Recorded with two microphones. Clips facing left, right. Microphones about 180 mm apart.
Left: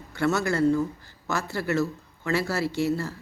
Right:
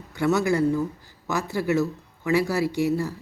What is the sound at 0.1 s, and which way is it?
Speech, 15° right (ahead or behind).